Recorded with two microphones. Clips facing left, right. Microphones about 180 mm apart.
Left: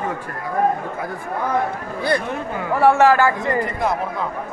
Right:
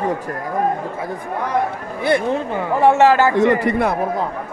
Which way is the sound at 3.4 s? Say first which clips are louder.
Right 7 dB; 75° right (ahead or behind).